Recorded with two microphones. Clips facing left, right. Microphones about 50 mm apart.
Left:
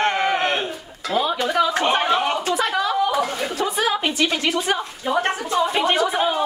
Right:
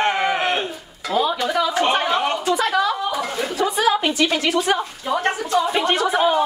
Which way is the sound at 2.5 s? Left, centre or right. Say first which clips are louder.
Right 2 dB; centre.